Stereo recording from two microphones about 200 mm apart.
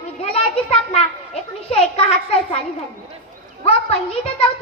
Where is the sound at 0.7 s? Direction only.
30° left (ahead or behind).